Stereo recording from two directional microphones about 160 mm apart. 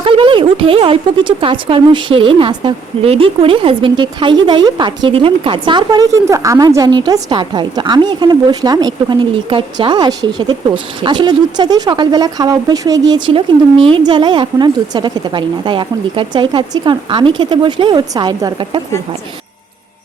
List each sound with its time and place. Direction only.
0.0 s speech: 35° right (ahead or behind)